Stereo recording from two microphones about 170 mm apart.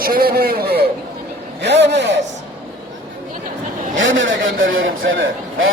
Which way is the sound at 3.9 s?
90° right.